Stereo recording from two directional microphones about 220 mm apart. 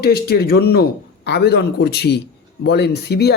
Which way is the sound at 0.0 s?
45° left (ahead or behind).